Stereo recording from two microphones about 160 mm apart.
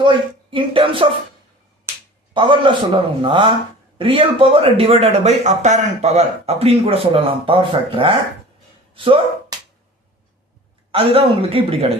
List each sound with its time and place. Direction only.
0.0 s speech: 30° right (ahead or behind)
2.3 s speech: 30° right (ahead or behind)
10.9 s speech: 35° right (ahead or behind)